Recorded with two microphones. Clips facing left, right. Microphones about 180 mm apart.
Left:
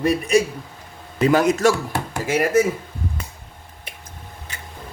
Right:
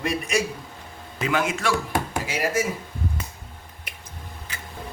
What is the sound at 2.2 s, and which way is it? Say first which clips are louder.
Speech: left 12 dB; 50° left (ahead or behind).